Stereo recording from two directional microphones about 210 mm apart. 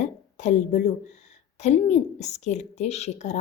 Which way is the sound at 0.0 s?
35° left (ahead or behind).